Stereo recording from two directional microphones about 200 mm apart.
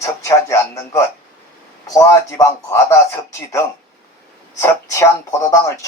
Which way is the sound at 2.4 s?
15° left (ahead or behind).